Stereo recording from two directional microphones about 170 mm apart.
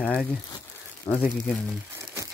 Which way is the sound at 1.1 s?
20° left (ahead or behind).